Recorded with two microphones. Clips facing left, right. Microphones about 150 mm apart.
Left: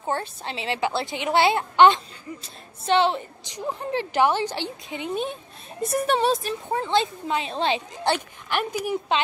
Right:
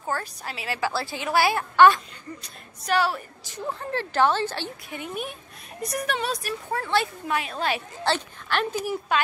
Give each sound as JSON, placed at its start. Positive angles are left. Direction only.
{"t": 0.0, "sound": "a woman's voice", "side_deg": 25}